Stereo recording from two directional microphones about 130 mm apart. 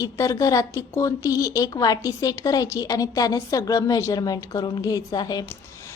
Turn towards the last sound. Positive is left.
turn(degrees=30)  # may be behind; listen again after turning